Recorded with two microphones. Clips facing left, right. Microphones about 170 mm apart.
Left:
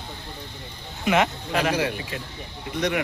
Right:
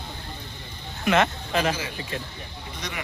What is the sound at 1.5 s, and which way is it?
Speech, centre (ahead or behind).